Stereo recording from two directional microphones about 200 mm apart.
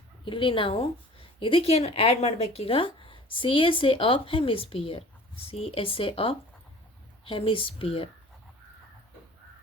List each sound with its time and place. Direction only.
0.3 s a woman's voice: 25° left (ahead or behind)